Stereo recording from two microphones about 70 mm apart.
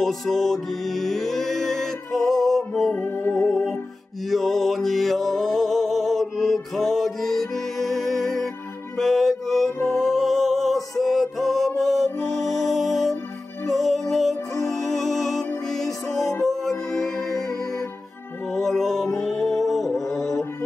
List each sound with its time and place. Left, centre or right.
0.0 s music: centre
2.9 s music: left
3.3 s music: centre
18.5 s music: centre